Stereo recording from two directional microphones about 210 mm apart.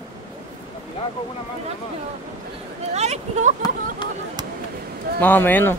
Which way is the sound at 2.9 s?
30° right (ahead or behind).